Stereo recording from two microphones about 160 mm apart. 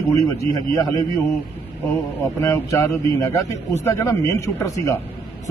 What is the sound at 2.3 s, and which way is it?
A man's voice, 20° left (ahead or behind).